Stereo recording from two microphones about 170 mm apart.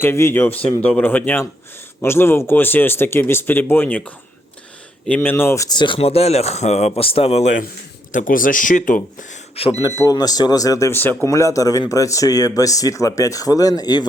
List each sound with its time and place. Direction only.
0.0 s speech: 15° left (ahead or behind); by 7.6 s 40° left (ahead or behind)
8.1 s speech: 55° left (ahead or behind)
9.6 s speech: 35° left (ahead or behind)
10.0 s speech: 20° left (ahead or behind)